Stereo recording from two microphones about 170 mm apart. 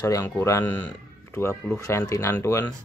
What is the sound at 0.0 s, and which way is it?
Speech, 15° left (ahead or behind).